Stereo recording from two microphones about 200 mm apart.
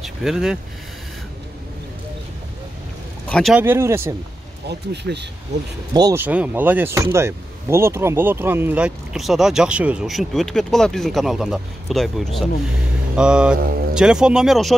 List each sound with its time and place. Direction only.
0.0 s speech: centre (ahead or behind)
3.3 s speech: 5° left (ahead or behind)
3.5 s speech: 10° right (ahead or behind)
4.6 s speech: 55° right (ahead or behind)
5.9 s speech: 15° right (ahead or behind)